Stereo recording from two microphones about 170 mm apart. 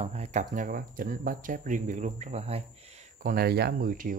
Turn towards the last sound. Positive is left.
turn(degrees=-55)  # may be behind; listen again after turning